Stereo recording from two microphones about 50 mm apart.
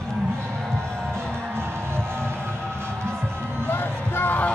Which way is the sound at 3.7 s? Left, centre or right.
Left.